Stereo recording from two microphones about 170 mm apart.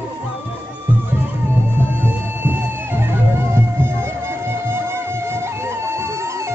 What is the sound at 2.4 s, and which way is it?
Music, 15° right (ahead or behind).